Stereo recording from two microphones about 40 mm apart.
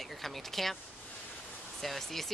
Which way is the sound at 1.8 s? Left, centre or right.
Centre.